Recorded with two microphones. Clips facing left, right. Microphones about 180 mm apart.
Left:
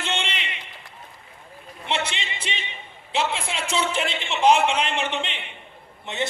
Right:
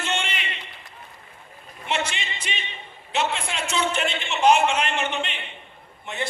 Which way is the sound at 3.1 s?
30° left (ahead or behind).